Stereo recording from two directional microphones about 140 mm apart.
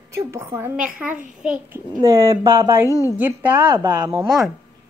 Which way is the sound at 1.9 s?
25° right (ahead or behind).